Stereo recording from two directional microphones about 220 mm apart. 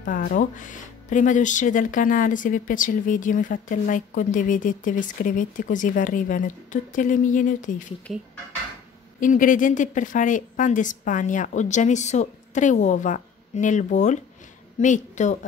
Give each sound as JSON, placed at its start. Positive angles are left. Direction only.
{"t": 0.0, "sound": "speech", "side_deg": 40}
{"t": 9.2, "sound": "speech", "side_deg": 35}